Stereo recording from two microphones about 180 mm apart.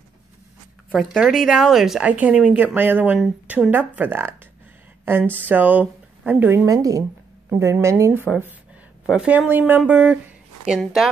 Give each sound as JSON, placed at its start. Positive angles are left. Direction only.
{"t": 1.1, "sound": "speech", "side_deg": 0}